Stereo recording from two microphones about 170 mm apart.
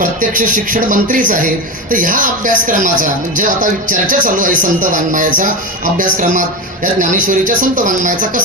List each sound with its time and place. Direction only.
0.0 s speech: 50° right (ahead or behind)